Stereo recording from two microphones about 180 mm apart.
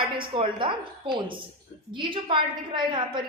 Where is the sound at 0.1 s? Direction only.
30° right (ahead or behind).